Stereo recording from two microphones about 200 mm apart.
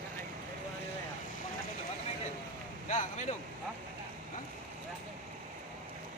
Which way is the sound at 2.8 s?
35° left (ahead or behind).